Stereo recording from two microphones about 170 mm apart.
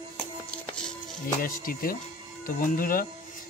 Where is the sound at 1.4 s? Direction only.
55° left (ahead or behind).